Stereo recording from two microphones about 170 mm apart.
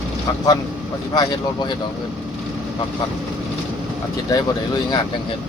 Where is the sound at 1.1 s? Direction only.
25° left (ahead or behind).